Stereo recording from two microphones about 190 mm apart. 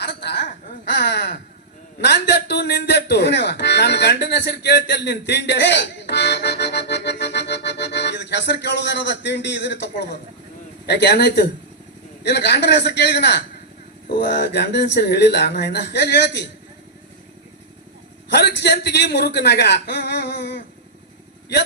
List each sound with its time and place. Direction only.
0.0 s a sound: 60° left (ahead or behind)
2.0 s speech: 60° left (ahead or behind)
18.3 s speech: 60° left (ahead or behind)